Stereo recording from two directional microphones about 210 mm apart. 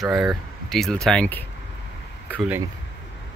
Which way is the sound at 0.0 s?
Centre (ahead or behind).